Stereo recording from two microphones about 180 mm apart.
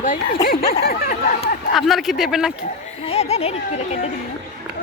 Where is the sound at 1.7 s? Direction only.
Centre (ahead or behind).